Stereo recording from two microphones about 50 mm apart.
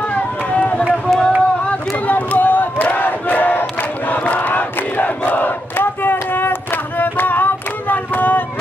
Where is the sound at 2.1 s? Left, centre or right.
Left.